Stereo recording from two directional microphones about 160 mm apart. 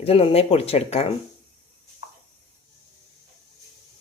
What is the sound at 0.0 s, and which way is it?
Speech, 40° left (ahead or behind).